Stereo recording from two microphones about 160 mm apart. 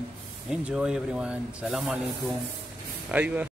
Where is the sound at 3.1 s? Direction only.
10° right (ahead or behind).